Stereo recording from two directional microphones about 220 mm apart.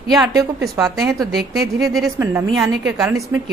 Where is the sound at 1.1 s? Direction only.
15° right (ahead or behind).